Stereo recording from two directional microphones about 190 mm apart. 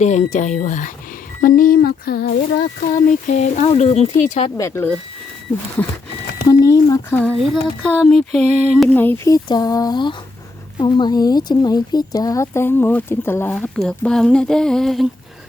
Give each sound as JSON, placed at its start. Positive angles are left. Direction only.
{"t": 0.0, "sound": "speech", "side_deg": 40}
{"t": 2.8, "sound": "speech", "side_deg": 45}
{"t": 4.5, "sound": "speech", "side_deg": 15}
{"t": 6.5, "sound": "a sound", "side_deg": 15}
{"t": 9.0, "sound": "speech", "side_deg": 10}